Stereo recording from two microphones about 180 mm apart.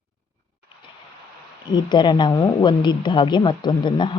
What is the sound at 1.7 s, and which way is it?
A woman's voice, 25° left (ahead or behind).